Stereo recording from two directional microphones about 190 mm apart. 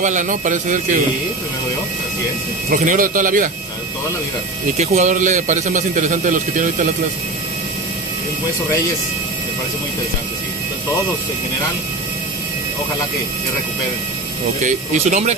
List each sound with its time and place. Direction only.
0.0 s speech: 40° right (ahead or behind)
2.7 s speech: 45° right (ahead or behind)
4.7 s speech: 40° right (ahead or behind)
14.6 s speech: 40° right (ahead or behind)